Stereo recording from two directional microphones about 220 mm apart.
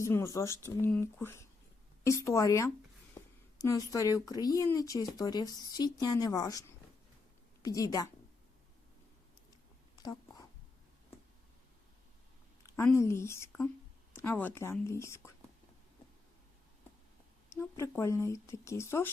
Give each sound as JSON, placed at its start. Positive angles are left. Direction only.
{"t": 0.0, "sound": "speech", "side_deg": 15}
{"t": 9.9, "sound": "a sound", "side_deg": 15}
{"t": 12.7, "sound": "speech", "side_deg": 10}
{"t": 17.5, "sound": "speech", "side_deg": 10}